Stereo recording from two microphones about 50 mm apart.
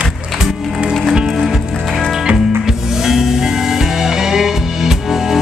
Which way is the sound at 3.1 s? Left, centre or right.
Centre.